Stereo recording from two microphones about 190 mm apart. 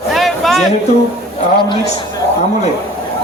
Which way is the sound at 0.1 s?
Centre (ahead or behind).